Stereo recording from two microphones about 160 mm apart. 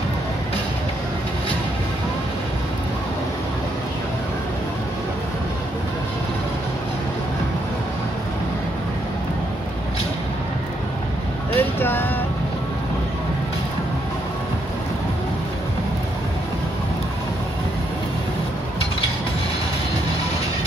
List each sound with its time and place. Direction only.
11.5 s vehicle: 15° left (ahead or behind)